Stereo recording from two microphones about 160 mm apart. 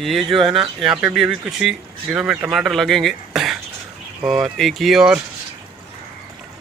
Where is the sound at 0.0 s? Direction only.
Centre (ahead or behind).